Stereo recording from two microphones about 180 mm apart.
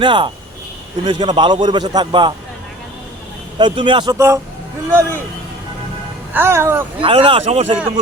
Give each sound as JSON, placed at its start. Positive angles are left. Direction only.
{"t": 0.0, "sound": "a man's voice", "side_deg": -25}
{"t": 3.6, "sound": "a man's voice", "side_deg": -25}
{"t": 4.1, "sound": "speech", "side_deg": -15}
{"t": 6.3, "sound": "speech", "side_deg": -15}
{"t": 7.0, "sound": "speech", "side_deg": -30}